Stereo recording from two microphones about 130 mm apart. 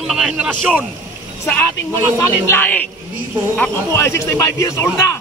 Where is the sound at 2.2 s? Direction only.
15° left (ahead or behind).